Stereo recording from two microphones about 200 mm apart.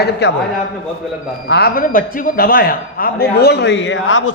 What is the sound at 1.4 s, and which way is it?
A man's voice, 55° left (ahead or behind).